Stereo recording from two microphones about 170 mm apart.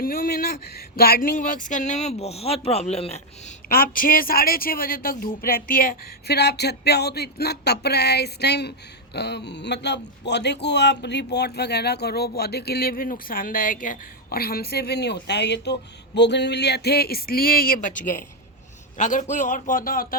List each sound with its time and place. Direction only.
0.0 s speech: 60° left (ahead or behind); by 3.5 s 40° left (ahead or behind)
3.7 s speech: 55° left (ahead or behind)